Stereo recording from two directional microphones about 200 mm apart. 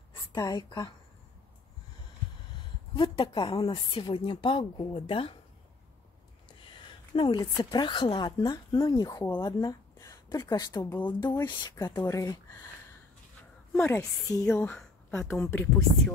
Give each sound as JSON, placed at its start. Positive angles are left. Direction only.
{"t": 0.3, "sound": "speech", "side_deg": 20}
{"t": 3.0, "sound": "speech", "side_deg": 25}
{"t": 7.2, "sound": "a woman's voice", "side_deg": 20}
{"t": 13.7, "sound": "a woman's voice", "side_deg": 10}